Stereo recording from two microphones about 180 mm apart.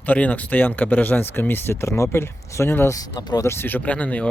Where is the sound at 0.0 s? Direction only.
10° left (ahead or behind).